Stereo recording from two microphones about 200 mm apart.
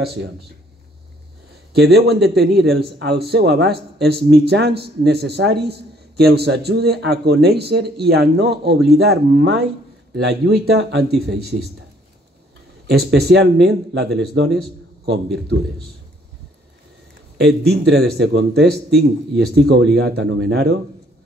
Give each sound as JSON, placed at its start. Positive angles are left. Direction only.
{"t": 0.0, "sound": "speech", "side_deg": -55}
{"t": 1.7, "sound": "a man's voice", "side_deg": -55}
{"t": 13.1, "sound": "speech", "side_deg": -55}
{"t": 17.4, "sound": "a man's voice", "side_deg": -55}